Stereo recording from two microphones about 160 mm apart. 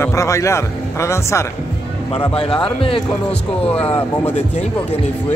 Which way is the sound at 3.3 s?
10° left (ahead or behind).